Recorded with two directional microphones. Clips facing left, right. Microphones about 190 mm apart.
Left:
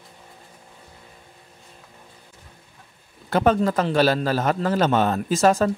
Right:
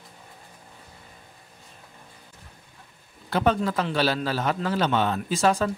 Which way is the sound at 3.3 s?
45° left (ahead or behind).